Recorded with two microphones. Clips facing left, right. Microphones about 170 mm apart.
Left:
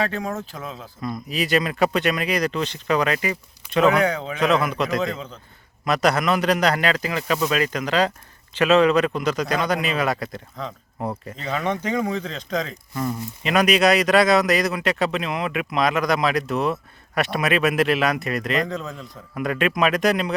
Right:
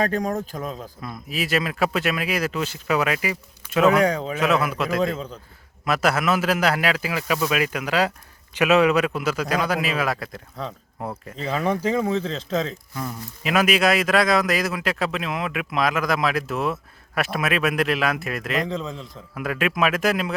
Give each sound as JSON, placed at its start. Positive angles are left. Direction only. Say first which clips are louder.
{"t": 0.0, "sound": "speech", "louder": "right 2 dB", "side_deg": -40}
{"t": 1.0, "sound": "speech", "louder": "left 4 dB", "side_deg": 0}
{"t": 11.8, "sound": "speech", "louder": "right 2 dB", "side_deg": -30}
{"t": 12.7, "sound": "speech", "louder": "left 5 dB", "side_deg": 0}